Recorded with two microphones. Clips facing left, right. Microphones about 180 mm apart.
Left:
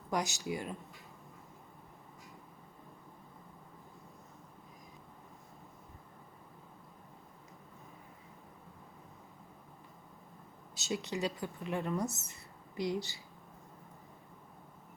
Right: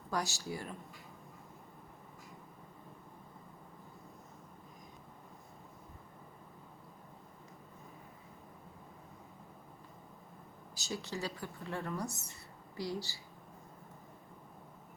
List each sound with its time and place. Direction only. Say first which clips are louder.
0.1 s speech: left 3 dB; 20° left (ahead or behind)
10.8 s speech: left 4 dB; 20° left (ahead or behind)